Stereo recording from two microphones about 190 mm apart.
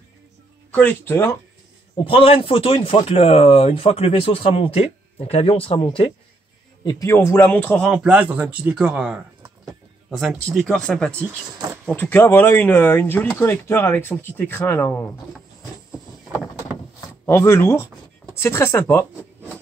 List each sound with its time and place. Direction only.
0.7 s speech: 10° left (ahead or behind)
2.0 s speech: 30° left (ahead or behind); by 7.9 s 10° left (ahead or behind)
7.9 s speech: 5° right (ahead or behind); by 15.0 s 10° left (ahead or behind)
17.3 s speech: 15° left (ahead or behind)